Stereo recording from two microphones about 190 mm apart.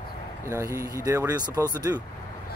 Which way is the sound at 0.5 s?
15° right (ahead or behind).